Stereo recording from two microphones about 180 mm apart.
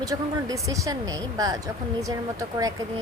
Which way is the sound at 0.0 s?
20° right (ahead or behind).